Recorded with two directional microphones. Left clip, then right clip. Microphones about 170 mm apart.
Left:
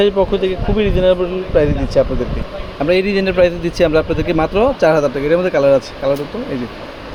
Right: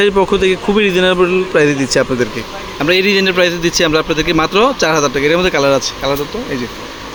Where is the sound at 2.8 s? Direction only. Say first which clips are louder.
Right 3 dB; centre (ahead or behind).